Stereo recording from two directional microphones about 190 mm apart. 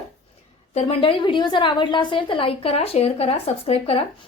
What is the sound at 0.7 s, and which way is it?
A woman's voice, 35° left (ahead or behind).